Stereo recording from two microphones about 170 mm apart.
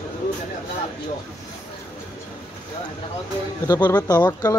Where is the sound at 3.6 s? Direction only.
20° left (ahead or behind).